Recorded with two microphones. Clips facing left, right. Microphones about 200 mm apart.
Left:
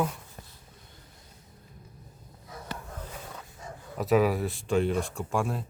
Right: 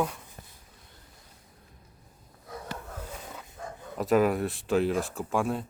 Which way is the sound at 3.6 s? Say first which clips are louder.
Right 4 dB; 55° right (ahead or behind).